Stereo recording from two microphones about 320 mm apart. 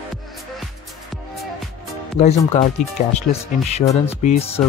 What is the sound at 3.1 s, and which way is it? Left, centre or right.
Speech, centre.